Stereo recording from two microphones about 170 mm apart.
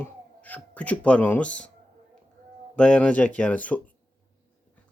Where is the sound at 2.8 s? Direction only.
5° left (ahead or behind).